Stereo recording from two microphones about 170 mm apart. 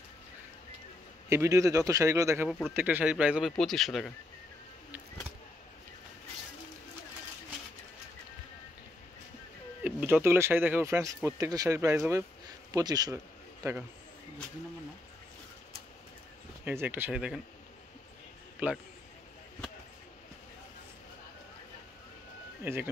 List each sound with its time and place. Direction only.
1.3 s speech: 15° right (ahead or behind); by 4.1 s centre (ahead or behind)
9.8 s a man's voice: 10° right (ahead or behind)
16.6 s speech: 10° right (ahead or behind)
18.6 s speech: 10° right (ahead or behind)
22.6 s speech: 15° right (ahead or behind)